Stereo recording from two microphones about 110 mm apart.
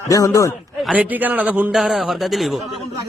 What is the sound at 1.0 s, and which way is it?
Speech, 15° right (ahead or behind).